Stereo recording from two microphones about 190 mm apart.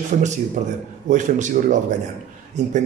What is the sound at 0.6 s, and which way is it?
Speech, 40° right (ahead or behind).